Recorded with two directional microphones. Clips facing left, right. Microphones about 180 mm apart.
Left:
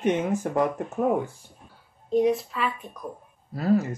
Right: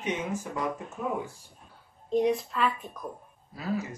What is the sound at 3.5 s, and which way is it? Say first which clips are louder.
Speech: left 9 dB; 50° left (ahead or behind).